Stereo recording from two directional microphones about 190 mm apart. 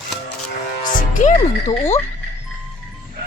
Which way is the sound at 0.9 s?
45° left (ahead or behind).